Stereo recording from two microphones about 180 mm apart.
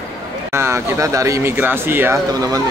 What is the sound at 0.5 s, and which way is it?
Speech, 15° right (ahead or behind).